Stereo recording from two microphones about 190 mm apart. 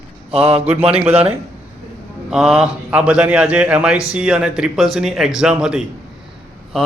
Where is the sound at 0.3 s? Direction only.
30° right (ahead or behind).